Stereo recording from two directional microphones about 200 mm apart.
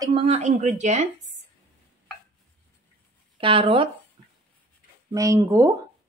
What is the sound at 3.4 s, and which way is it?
Speech, 25° right (ahead or behind).